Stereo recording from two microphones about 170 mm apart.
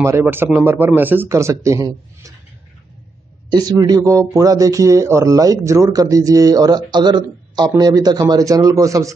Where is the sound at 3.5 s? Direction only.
25° right (ahead or behind).